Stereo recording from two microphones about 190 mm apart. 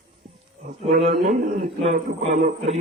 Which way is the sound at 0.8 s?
30° right (ahead or behind).